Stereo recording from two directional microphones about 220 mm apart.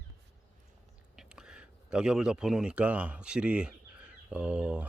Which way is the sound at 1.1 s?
Centre (ahead or behind).